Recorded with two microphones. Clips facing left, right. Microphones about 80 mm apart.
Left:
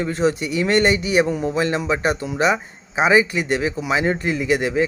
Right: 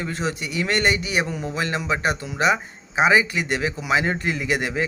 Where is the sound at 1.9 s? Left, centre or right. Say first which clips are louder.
Even; centre.